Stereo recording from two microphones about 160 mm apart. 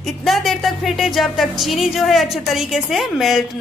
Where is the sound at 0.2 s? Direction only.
Centre (ahead or behind).